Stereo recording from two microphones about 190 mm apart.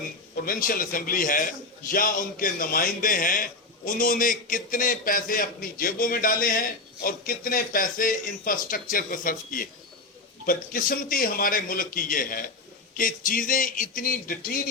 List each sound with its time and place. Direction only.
0.3 s a man's voice: 50° left (ahead or behind)